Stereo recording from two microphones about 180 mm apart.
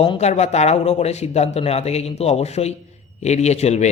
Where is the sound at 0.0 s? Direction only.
30° left (ahead or behind).